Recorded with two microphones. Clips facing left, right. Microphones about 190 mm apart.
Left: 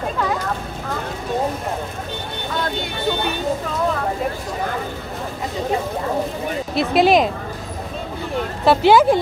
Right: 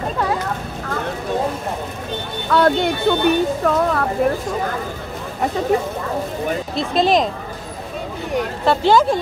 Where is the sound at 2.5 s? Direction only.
65° right (ahead or behind).